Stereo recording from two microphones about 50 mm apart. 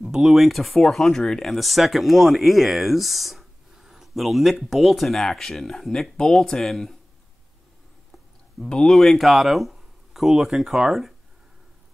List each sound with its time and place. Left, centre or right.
0.0 s speech: centre
8.6 s speech: centre